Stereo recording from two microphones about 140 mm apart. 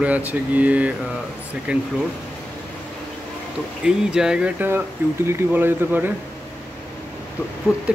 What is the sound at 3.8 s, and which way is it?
Speech, 5° right (ahead or behind).